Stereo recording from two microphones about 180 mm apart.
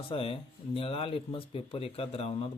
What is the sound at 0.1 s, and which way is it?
Speech, 30° left (ahead or behind).